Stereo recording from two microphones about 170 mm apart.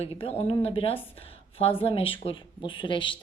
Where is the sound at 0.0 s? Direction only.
35° left (ahead or behind).